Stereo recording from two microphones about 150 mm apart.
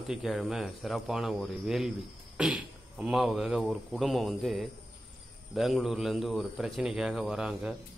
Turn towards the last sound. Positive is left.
turn(degrees=-5)  # may be behind; listen again after turning